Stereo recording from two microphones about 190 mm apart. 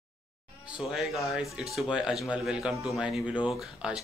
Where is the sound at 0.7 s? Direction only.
5° right (ahead or behind).